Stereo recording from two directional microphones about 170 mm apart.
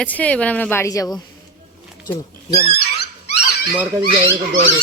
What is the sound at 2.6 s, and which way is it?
Speech, 65° left (ahead or behind).